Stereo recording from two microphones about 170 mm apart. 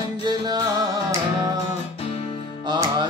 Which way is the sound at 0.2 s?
25° right (ahead or behind).